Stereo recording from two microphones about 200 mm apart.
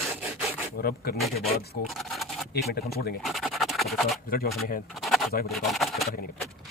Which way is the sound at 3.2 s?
Centre (ahead or behind).